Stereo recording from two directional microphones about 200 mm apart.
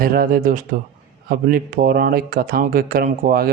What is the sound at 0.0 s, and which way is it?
Speech, 45° right (ahead or behind).